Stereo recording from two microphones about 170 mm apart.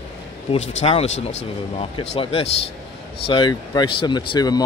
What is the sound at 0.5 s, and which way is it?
Speech, 40° left (ahead or behind).